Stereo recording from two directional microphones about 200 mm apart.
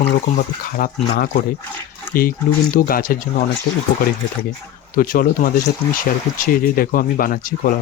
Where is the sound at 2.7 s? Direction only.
45° left (ahead or behind).